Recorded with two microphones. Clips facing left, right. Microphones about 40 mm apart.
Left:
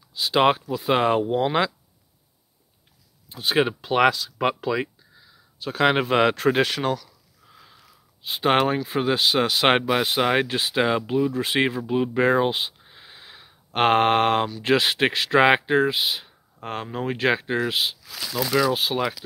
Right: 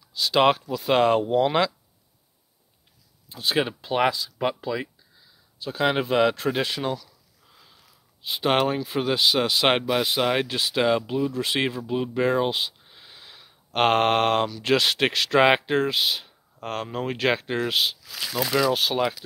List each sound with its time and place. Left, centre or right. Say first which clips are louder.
0.2 s speech: even; centre
3.3 s speech: left 3 dB; left
3.8 s speech: left 3 dB; left
7.5 s a sound: left 4 dB; centre
8.3 s speech: left 2 dB; left
8.8 s speech: left 1 dB; left
9.8 s speech: left 2 dB; centre
11.3 s speech: left 2 dB; left
11.6 s speech: left 3 dB; centre
12.1 s speech: left 2 dB; left
12.8 s speech: left 2 dB; centre